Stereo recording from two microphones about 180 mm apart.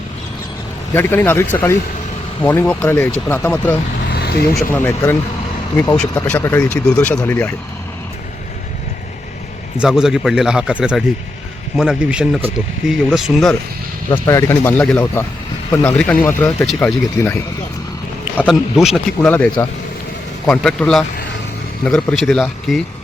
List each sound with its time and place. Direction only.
0.9 s speech: 10° left (ahead or behind)
4.1 s vehicle: 60° left (ahead or behind)
4.7 s speech: 10° left (ahead or behind)
6.0 s speech: 10° left (ahead or behind)
9.7 s speech: 5° right (ahead or behind)
14.1 s speech: 15° left (ahead or behind)
18.4 s speech: centre (ahead or behind)
20.5 s speech: 5° left (ahead or behind)